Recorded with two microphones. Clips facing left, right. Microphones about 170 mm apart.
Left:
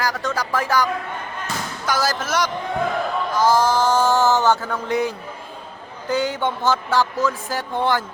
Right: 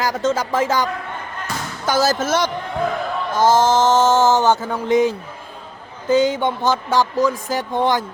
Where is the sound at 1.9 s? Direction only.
25° right (ahead or behind).